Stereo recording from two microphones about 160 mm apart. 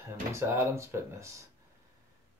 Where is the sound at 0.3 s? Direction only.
15° right (ahead or behind).